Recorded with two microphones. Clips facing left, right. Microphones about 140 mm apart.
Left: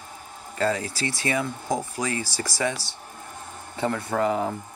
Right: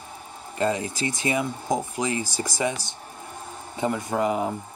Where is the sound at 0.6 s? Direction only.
20° right (ahead or behind).